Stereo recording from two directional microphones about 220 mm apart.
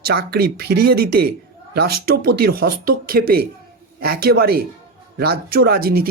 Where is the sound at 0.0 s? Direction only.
45° right (ahead or behind).